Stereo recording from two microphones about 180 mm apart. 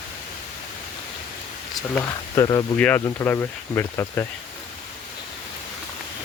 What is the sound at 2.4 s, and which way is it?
Speech, 20° left (ahead or behind).